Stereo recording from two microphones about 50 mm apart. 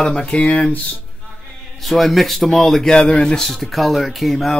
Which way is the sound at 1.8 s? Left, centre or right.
Centre.